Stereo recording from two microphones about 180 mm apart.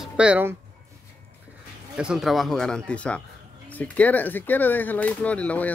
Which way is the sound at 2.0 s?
5° right (ahead or behind).